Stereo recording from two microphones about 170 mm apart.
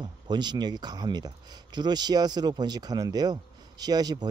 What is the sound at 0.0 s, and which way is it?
Speech, 25° right (ahead or behind).